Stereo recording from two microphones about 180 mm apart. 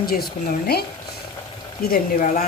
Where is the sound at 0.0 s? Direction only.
55° left (ahead or behind).